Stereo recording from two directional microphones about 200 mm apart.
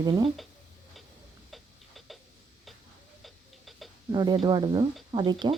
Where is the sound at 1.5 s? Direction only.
Centre (ahead or behind).